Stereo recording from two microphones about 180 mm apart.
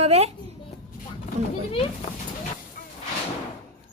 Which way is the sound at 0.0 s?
35° right (ahead or behind).